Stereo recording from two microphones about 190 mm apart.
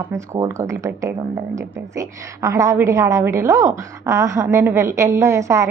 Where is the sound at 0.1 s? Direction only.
15° right (ahead or behind).